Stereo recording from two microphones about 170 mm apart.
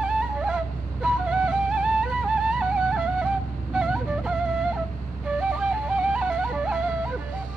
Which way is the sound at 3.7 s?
Centre (ahead or behind).